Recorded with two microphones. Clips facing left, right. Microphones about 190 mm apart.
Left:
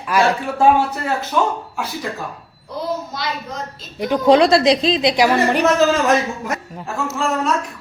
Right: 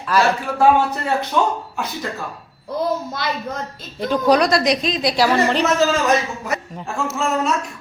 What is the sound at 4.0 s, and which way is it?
A woman's voice, 20° left (ahead or behind).